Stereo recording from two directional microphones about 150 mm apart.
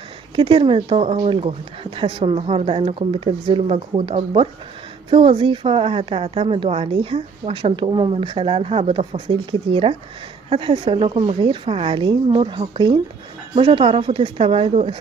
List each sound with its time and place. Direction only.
0.4 s a woman's voice: 35° right (ahead or behind)